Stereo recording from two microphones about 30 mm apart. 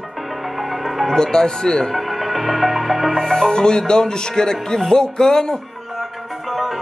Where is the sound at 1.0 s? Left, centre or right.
Centre.